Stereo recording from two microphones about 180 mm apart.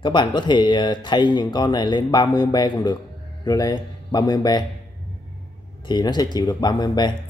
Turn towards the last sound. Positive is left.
turn(degrees=25)  # may be behind; listen again after turning